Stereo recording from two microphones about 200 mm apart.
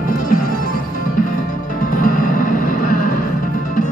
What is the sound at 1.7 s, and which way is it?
Music, 45° left (ahead or behind).